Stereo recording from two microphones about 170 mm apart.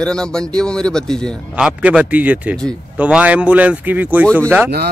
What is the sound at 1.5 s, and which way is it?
Speech, 5° right (ahead or behind).